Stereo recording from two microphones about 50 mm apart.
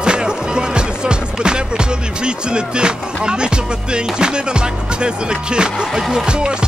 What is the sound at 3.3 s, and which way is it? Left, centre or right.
Speech, centre.